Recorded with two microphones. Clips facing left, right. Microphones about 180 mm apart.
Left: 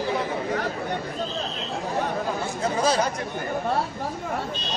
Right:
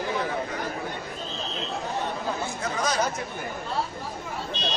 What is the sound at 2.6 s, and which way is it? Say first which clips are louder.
Speech: left 6 dB; 30° left (ahead or behind).